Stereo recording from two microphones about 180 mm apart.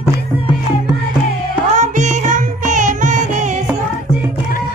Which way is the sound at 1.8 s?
40° right (ahead or behind).